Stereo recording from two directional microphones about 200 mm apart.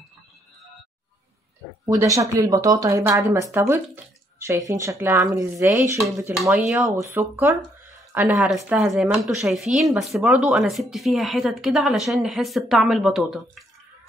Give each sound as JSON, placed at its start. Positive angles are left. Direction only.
{"t": 1.9, "sound": "speech", "side_deg": -15}